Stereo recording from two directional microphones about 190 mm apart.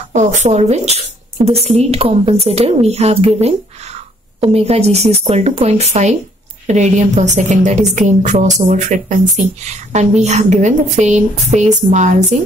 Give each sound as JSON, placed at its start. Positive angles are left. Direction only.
{"t": 0.1, "sound": "speech", "side_deg": -40}